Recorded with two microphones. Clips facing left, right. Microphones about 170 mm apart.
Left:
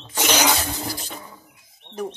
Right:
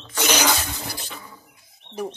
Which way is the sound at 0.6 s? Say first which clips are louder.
Left 4 dB; 35° left (ahead or behind).